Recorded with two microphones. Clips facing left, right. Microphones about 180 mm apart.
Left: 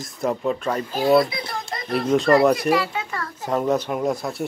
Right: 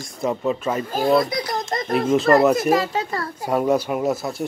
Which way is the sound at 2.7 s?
40° right (ahead or behind).